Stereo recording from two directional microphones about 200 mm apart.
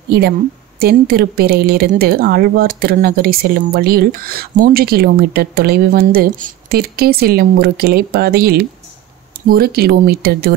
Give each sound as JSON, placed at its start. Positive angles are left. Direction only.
{"t": 0.7, "sound": "speech", "side_deg": -50}